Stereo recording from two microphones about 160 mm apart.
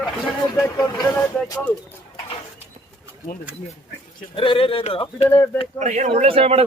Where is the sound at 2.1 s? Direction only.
35° left (ahead or behind).